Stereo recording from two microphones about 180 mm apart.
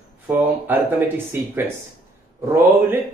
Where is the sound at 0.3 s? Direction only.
10° right (ahead or behind).